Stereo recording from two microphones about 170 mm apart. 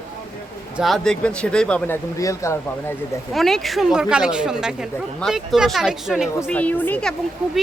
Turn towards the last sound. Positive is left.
turn(degrees=5)  # may be behind; listen again after turning